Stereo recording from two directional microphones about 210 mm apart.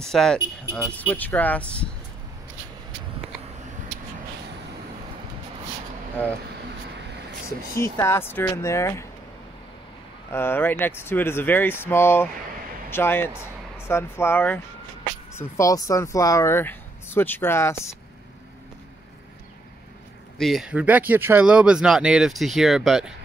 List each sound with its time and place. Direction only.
0.1 s speech: centre (ahead or behind)
7.7 s speech: 15° left (ahead or behind)
10.3 s speech: 10° left (ahead or behind)
20.3 s speech: centre (ahead or behind)